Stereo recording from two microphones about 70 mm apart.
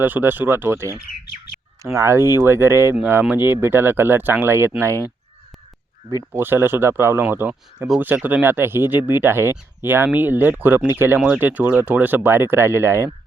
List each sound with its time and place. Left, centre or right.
0.0 s speech: right
6.3 s speech: right